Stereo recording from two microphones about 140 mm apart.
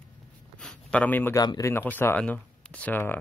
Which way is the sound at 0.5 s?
5° left (ahead or behind).